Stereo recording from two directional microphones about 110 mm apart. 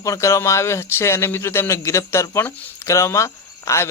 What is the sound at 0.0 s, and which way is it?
A man's voice, 30° left (ahead or behind).